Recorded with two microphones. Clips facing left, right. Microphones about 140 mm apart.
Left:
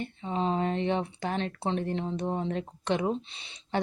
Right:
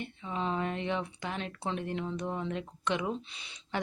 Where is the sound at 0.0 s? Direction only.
30° left (ahead or behind).